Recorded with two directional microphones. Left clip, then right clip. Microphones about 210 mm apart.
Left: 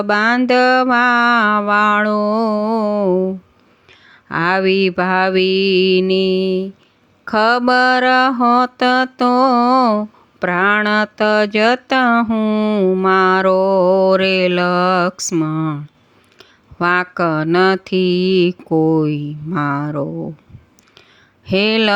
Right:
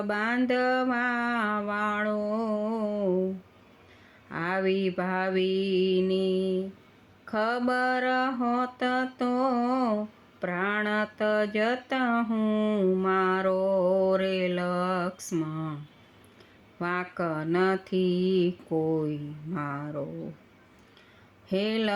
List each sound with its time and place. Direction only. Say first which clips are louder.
0.1 s mantra: left 14 dB; 35° left (ahead or behind)
4.3 s mantra: left 13 dB; 40° left (ahead or behind)
21.4 s mantra: left 14 dB; 35° left (ahead or behind)